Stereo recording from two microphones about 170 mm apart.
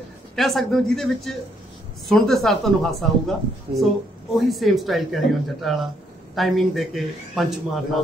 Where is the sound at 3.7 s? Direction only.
30° right (ahead or behind).